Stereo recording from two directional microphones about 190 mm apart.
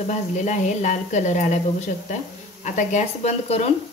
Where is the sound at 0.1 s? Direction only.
40° left (ahead or behind).